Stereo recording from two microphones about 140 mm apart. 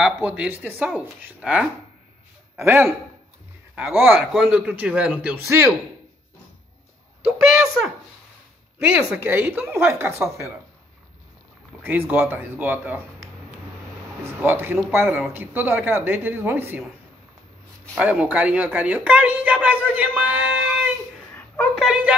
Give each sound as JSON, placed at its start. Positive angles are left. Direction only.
{"t": 0.0, "sound": "a woman's voice", "side_deg": -10}
{"t": 8.8, "sound": "a woman's voice", "side_deg": -15}
{"t": 11.8, "sound": "a woman's voice", "side_deg": -15}
{"t": 17.9, "sound": "a woman's voice", "side_deg": -10}